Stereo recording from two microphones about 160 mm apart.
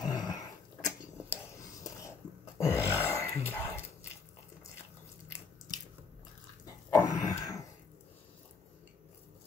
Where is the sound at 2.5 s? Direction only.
10° right (ahead or behind).